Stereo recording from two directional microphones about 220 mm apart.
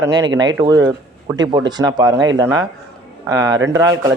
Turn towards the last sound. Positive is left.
turn(degrees=-15)  # may be behind; listen again after turning